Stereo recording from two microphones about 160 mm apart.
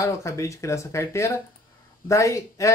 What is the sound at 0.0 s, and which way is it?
Speech, 20° left (ahead or behind).